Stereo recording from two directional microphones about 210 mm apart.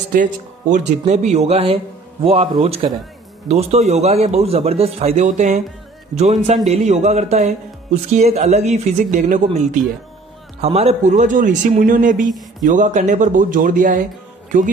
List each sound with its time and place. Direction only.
0.1 s a man's voice: 40° right (ahead or behind)
10.6 s speech: 30° right (ahead or behind)